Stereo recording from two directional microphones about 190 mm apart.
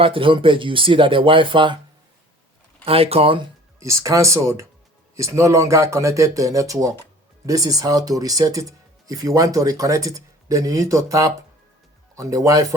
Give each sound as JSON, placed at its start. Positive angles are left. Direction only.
{"t": 0.0, "sound": "speech", "side_deg": -25}
{"t": 2.8, "sound": "speech", "side_deg": -30}
{"t": 3.8, "sound": "speech", "side_deg": -15}